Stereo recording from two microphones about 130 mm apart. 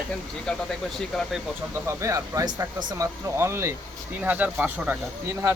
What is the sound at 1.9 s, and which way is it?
Speech, 25° right (ahead or behind).